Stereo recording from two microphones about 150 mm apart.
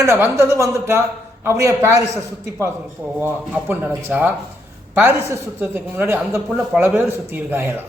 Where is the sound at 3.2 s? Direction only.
10° right (ahead or behind).